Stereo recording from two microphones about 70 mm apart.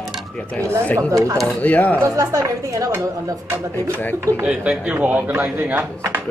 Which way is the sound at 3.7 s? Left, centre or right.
Left.